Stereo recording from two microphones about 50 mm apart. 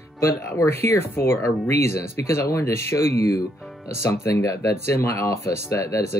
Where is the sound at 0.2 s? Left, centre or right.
Left.